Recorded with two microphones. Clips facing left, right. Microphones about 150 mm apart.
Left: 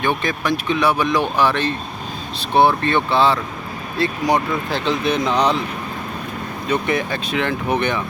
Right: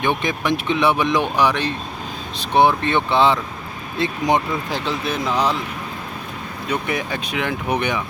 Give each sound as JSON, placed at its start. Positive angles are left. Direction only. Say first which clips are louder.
{"t": 0.0, "sound": "speech", "louder": "even", "side_deg": -20}
{"t": 4.9, "sound": "speech", "louder": "left 5 dB", "side_deg": -5}
{"t": 6.7, "sound": "speech", "louder": "left 3 dB", "side_deg": -10}